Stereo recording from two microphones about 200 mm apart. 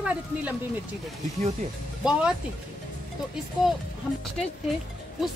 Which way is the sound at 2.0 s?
5° right (ahead or behind).